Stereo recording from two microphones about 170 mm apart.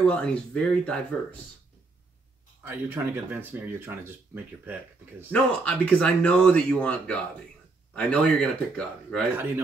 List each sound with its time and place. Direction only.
0.0 s speech: 5° left (ahead or behind)
2.6 s speech: 10° right (ahead or behind)
5.3 s speech: 10° left (ahead or behind)